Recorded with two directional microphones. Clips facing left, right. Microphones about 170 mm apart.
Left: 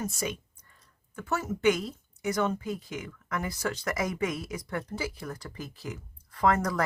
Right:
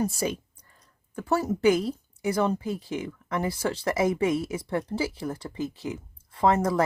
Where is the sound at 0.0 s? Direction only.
35° right (ahead or behind).